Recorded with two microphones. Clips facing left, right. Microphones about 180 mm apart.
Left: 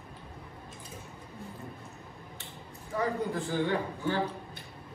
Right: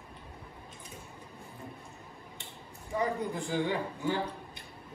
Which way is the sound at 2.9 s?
15° right (ahead or behind).